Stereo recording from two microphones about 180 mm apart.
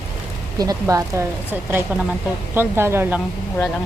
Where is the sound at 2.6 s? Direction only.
15° right (ahead or behind).